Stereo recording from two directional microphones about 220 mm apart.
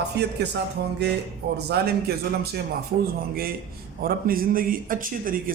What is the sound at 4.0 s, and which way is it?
Speech, 40° right (ahead or behind).